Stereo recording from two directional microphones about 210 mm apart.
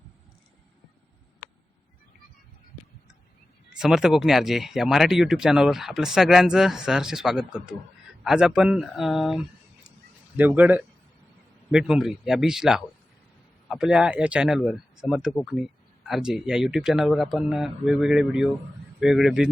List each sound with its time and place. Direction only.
3.8 s a man's voice: centre (ahead or behind)